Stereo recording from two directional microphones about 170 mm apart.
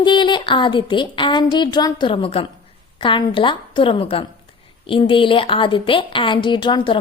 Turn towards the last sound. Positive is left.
turn(degrees=25)  # may be behind; listen again after turning